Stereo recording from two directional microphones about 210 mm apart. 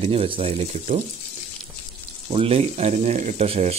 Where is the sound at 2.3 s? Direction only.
30° right (ahead or behind).